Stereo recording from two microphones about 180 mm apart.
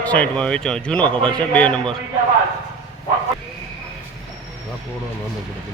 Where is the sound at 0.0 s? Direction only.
5° left (ahead or behind).